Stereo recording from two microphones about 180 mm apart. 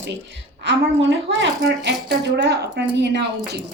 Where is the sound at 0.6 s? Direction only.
80° right.